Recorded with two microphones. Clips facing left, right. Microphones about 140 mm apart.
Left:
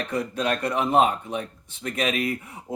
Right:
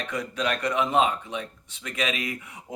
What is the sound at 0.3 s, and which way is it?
Speech, 40° left (ahead or behind).